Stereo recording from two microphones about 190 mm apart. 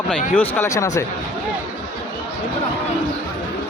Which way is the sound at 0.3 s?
10° left (ahead or behind).